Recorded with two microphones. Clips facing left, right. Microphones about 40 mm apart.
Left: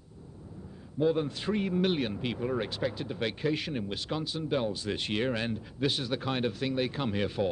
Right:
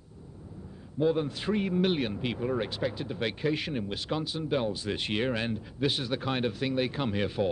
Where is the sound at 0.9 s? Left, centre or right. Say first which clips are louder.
Right 1 dB; centre.